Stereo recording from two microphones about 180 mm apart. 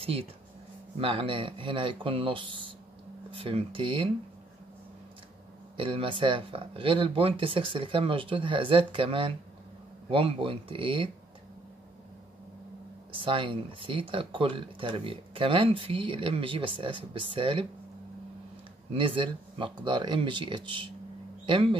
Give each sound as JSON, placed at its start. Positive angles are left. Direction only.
{"t": 0.0, "sound": "speech", "side_deg": -30}
{"t": 5.8, "sound": "speech", "side_deg": -30}
{"t": 13.2, "sound": "speech", "side_deg": -30}
{"t": 18.9, "sound": "speech", "side_deg": -30}